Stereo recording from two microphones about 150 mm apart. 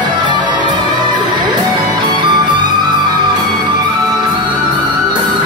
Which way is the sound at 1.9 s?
30° right (ahead or behind).